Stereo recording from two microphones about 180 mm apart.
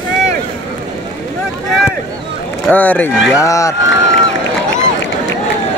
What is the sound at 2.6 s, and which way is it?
Speech, 10° left (ahead or behind).